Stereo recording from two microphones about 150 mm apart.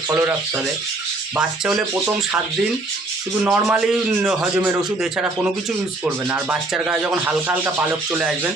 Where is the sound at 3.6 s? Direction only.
5° right (ahead or behind).